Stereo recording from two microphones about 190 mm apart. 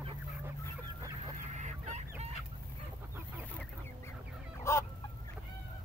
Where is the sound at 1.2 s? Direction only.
40° right (ahead or behind).